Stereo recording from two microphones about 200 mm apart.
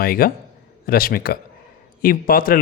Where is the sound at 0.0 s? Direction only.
45° left (ahead or behind).